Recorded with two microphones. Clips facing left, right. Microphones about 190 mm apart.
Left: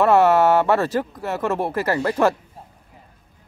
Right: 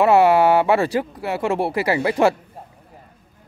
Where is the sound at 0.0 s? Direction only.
10° right (ahead or behind).